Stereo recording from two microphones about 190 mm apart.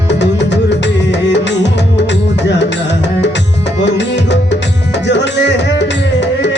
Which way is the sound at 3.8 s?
65° left (ahead or behind).